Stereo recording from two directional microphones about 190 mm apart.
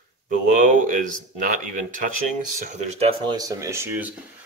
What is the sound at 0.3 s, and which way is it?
Speech, 40° right (ahead or behind).